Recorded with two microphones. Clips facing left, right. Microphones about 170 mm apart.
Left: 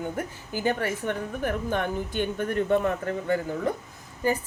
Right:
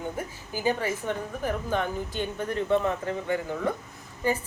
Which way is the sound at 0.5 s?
60° left (ahead or behind).